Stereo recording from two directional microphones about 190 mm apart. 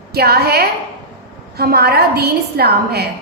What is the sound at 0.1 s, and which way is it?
A woman's voice, 55° right (ahead or behind).